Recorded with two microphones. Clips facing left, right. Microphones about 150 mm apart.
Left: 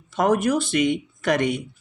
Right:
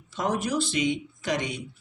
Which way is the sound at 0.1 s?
55° left (ahead or behind).